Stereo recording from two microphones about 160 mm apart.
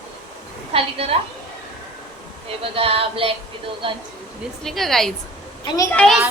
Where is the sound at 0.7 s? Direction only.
40° right (ahead or behind).